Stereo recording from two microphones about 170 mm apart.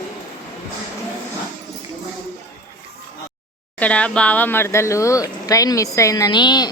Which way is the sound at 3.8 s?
5° left (ahead or behind).